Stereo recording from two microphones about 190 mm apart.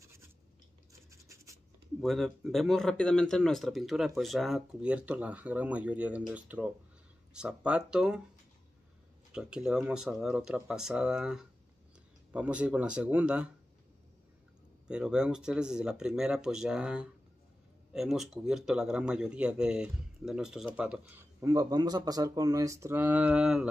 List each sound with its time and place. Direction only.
1.3 s scratch: 15° right (ahead or behind)
2.0 s a man's voice: centre (ahead or behind)
9.3 s a man's voice: 5° right (ahead or behind)
14.9 s a man's voice: 5° right (ahead or behind)